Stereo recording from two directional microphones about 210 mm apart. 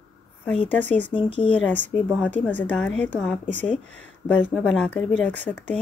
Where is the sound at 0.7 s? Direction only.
10° left (ahead or behind).